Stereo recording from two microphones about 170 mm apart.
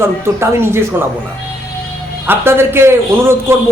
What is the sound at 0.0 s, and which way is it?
A man's voice, 15° right (ahead or behind).